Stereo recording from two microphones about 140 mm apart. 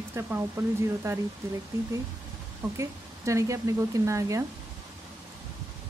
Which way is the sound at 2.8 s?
20° right (ahead or behind).